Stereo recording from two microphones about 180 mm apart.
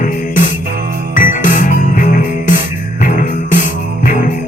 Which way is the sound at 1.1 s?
45° left (ahead or behind).